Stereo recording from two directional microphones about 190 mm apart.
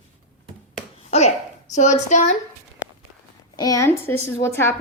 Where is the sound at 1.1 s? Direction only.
35° left (ahead or behind).